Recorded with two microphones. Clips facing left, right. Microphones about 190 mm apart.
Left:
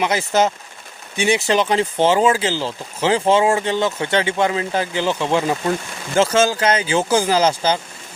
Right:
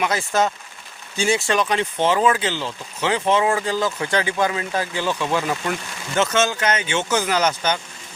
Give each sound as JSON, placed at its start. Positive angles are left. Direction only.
{"t": 0.0, "sound": "speech", "side_deg": 20}